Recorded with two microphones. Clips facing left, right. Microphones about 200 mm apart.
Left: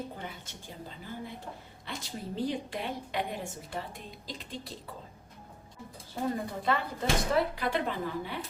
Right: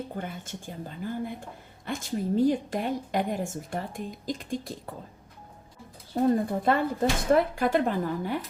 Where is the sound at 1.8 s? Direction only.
50° right (ahead or behind).